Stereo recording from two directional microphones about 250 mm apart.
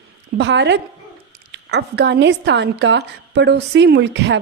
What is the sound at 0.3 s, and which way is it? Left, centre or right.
A woman's voice, right.